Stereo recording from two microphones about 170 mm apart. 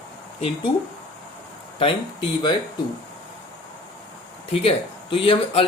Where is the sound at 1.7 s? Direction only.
30° left (ahead or behind).